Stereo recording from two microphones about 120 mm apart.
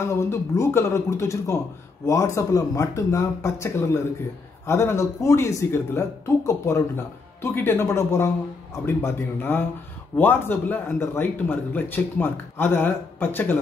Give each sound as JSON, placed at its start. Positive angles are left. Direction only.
{"t": 0.1, "sound": "a man's voice", "side_deg": 20}